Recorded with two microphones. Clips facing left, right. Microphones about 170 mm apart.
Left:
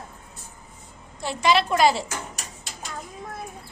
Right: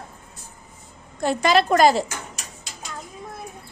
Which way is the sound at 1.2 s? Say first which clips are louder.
Right 3 dB; 45° right (ahead or behind).